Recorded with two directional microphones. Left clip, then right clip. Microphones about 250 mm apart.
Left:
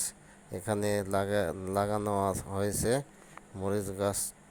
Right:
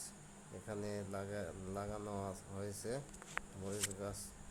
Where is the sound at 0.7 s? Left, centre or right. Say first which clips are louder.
Left 15 dB; left.